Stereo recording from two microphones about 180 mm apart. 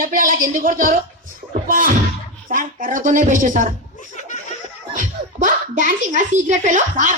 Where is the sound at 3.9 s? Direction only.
45° left (ahead or behind).